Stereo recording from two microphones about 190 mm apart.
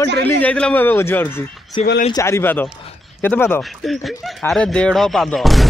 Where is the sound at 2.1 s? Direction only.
15° left (ahead or behind).